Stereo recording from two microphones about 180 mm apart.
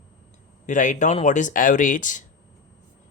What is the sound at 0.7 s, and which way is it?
Speech, 45° left (ahead or behind).